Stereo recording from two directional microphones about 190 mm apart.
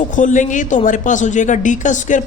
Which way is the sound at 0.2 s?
40° left (ahead or behind).